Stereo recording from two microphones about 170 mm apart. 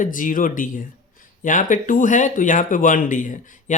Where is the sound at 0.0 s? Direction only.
50° left (ahead or behind).